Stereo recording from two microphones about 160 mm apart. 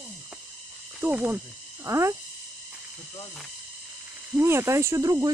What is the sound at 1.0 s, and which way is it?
Speech, 10° right (ahead or behind).